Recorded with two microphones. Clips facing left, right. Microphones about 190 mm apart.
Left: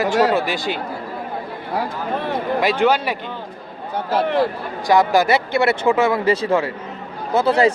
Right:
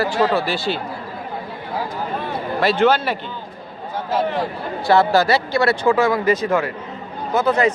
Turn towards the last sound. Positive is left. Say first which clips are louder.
# left 2 dB
turn(degrees=30)  # may be behind; listen again after turning